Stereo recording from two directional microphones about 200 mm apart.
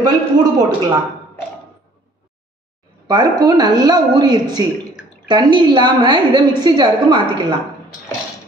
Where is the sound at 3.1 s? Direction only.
20° right (ahead or behind).